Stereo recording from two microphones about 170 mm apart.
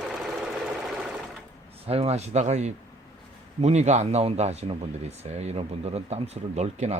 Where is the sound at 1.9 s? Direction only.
35° right (ahead or behind).